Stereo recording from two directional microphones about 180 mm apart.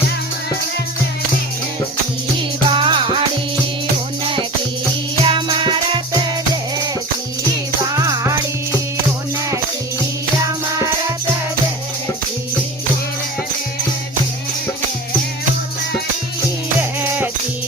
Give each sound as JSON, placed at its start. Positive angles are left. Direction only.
{"t": 2.6, "sound": "music", "side_deg": -30}
{"t": 5.2, "sound": "music", "side_deg": -25}
{"t": 7.9, "sound": "music", "side_deg": -15}